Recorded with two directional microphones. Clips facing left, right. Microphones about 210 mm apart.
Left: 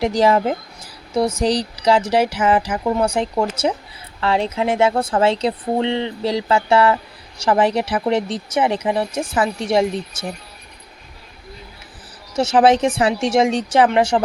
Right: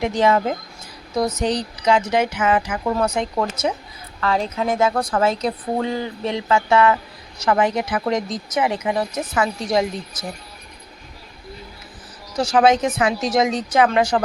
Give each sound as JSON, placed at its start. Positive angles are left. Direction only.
{"t": 0.0, "sound": "speech", "side_deg": 35}
{"t": 2.8, "sound": "speech", "side_deg": 20}
{"t": 3.5, "sound": "speech", "side_deg": 30}
{"t": 12.3, "sound": "speech", "side_deg": 25}